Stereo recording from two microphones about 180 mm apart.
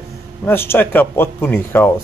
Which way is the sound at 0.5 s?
10° left (ahead or behind).